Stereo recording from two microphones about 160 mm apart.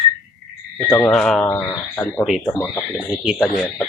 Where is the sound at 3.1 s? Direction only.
5° right (ahead or behind).